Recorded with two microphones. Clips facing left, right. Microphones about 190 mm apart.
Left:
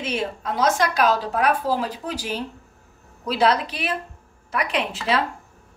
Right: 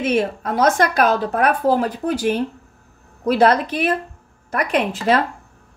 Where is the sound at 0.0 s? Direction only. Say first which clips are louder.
Right 7 dB; 55° right (ahead or behind).